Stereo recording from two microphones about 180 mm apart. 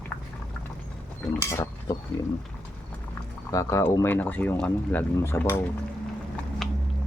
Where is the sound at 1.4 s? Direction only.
15° left (ahead or behind).